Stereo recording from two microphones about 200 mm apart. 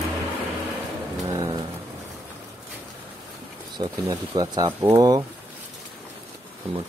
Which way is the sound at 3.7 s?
20° right (ahead or behind).